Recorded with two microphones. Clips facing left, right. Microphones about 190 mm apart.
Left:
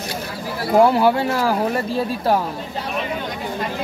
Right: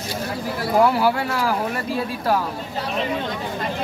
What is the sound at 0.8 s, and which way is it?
Speech, 25° left (ahead or behind).